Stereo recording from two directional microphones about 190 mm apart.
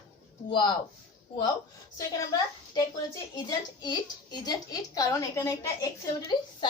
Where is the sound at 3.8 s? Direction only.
20° left (ahead or behind).